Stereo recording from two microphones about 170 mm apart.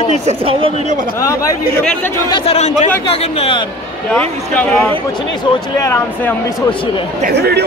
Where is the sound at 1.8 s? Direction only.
15° left (ahead or behind).